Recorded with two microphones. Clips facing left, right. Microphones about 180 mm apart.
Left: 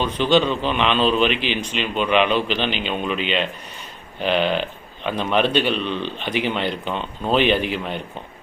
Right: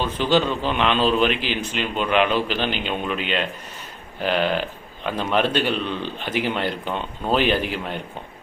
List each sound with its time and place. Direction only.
0.0 s speech: 10° right (ahead or behind)